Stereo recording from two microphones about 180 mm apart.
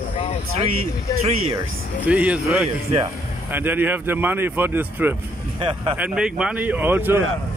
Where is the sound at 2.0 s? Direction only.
5° right (ahead or behind).